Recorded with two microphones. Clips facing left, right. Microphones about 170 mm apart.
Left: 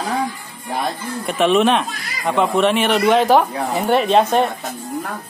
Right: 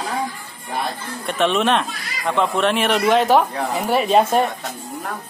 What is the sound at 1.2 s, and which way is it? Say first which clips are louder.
Speech: left 3 dB; centre (ahead or behind).